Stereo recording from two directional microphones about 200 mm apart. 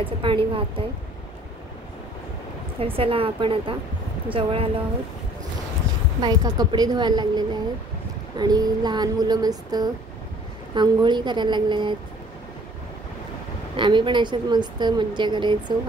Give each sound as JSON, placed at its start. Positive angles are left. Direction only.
{"t": 0.0, "sound": "a woman's voice", "side_deg": -25}
{"t": 2.8, "sound": "a woman's voice", "side_deg": -25}
{"t": 6.2, "sound": "a woman's voice", "side_deg": -20}
{"t": 13.7, "sound": "a woman's voice", "side_deg": -25}